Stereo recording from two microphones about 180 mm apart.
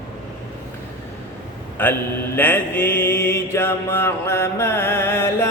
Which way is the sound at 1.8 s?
10° left (ahead or behind).